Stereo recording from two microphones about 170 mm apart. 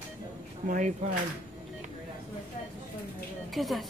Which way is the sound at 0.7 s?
45° right (ahead or behind).